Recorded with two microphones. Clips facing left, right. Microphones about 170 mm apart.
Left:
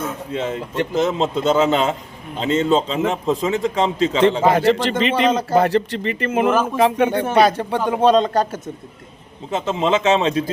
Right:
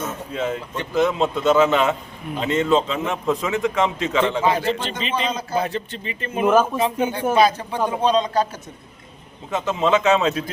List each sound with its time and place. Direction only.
0.3 s a man's voice: 30° left (ahead or behind)
4.4 s a man's voice: 70° left (ahead or behind)
9.5 s a man's voice: 25° left (ahead or behind)